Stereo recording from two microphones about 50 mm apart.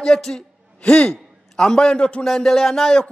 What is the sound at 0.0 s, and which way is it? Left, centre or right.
Speech, centre.